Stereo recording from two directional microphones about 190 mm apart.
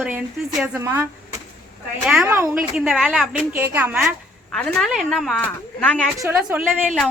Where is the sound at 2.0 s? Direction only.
5° right (ahead or behind).